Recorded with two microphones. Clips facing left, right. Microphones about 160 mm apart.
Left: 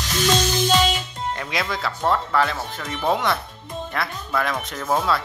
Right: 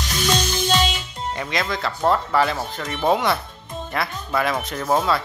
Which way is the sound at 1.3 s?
Centre (ahead or behind).